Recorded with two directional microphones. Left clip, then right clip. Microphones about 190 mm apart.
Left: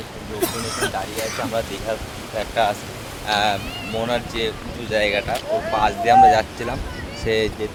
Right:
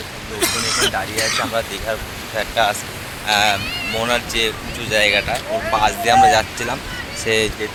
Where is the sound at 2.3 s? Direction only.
10° right (ahead or behind).